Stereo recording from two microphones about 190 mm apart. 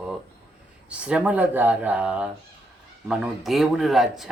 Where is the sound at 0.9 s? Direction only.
5° right (ahead or behind).